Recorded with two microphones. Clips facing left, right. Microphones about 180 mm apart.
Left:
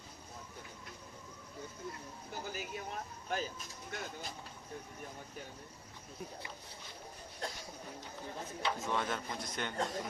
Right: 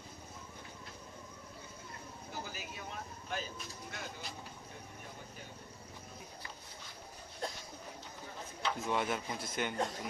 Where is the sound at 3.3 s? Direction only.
45° left (ahead or behind).